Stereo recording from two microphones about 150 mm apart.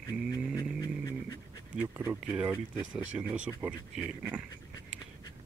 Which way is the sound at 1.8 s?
15° right (ahead or behind).